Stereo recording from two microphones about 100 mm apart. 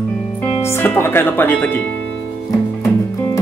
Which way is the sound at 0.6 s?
25° left (ahead or behind).